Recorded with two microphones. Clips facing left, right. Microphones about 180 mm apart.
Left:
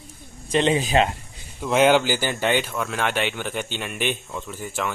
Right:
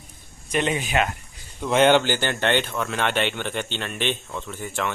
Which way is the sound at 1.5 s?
5° left (ahead or behind).